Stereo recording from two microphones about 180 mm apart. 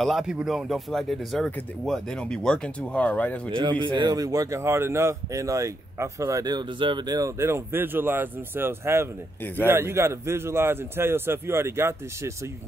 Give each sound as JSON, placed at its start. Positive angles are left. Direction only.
{"t": 0.0, "sound": "speech", "side_deg": 0}
{"t": 3.4, "sound": "speech", "side_deg": -25}